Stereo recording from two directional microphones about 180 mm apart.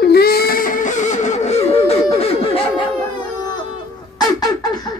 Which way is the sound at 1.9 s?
35° left (ahead or behind).